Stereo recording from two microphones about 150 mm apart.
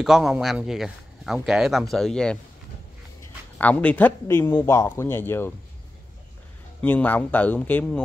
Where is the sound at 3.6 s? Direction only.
10° left (ahead or behind).